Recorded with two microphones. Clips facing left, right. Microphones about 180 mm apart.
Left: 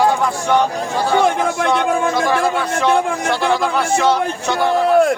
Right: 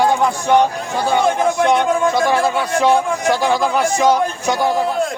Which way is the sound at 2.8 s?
10° right (ahead or behind).